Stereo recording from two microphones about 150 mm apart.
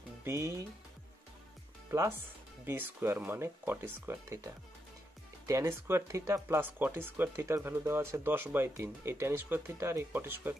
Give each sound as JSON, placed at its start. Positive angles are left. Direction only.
{"t": 0.2, "sound": "speech", "side_deg": -20}
{"t": 1.9, "sound": "speech", "side_deg": -15}
{"t": 5.5, "sound": "speech", "side_deg": -20}